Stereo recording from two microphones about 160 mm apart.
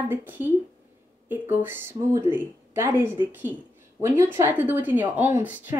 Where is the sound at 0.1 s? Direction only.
10° right (ahead or behind).